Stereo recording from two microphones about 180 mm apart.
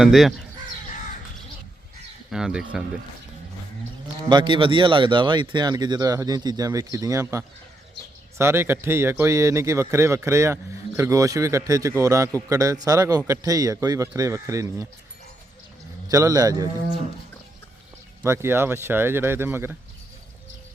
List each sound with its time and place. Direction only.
0.0 s speech: centre (ahead or behind)
2.3 s speech: 5° right (ahead or behind)
4.3 s speech: 25° right (ahead or behind)
16.0 s speech: 20° right (ahead or behind)
18.2 s speech: 10° right (ahead or behind)